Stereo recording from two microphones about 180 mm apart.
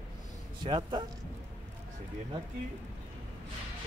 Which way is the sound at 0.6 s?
25° right (ahead or behind).